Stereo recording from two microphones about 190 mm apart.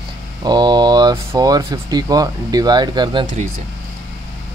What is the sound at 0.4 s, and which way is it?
A man's voice, 20° right (ahead or behind).